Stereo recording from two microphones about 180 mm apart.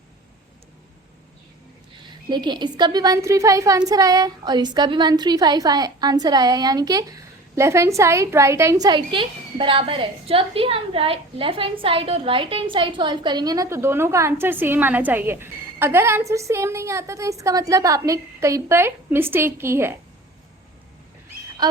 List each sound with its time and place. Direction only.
2.0 s a woman's voice: 25° right (ahead or behind)